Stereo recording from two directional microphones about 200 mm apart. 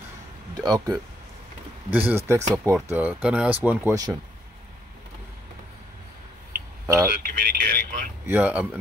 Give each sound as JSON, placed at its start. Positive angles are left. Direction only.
{"t": 0.6, "sound": "speech", "side_deg": -20}
{"t": 7.1, "sound": "a sound", "side_deg": -50}
{"t": 8.3, "sound": "speech", "side_deg": -10}